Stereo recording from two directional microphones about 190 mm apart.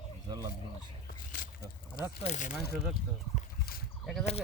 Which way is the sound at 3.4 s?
50° left (ahead or behind).